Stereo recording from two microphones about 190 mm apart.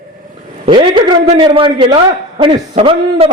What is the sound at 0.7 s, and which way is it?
A man's voice, 25° right (ahead or behind).